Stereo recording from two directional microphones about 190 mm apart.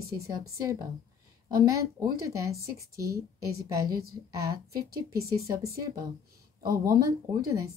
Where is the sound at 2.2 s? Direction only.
15° right (ahead or behind).